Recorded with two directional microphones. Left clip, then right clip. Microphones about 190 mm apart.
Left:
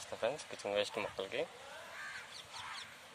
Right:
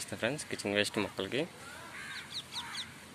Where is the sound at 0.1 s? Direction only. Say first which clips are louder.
Right 2 dB; 5° left (ahead or behind).